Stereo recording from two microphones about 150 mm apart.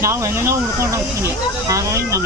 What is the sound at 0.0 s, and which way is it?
Speech, 20° right (ahead or behind).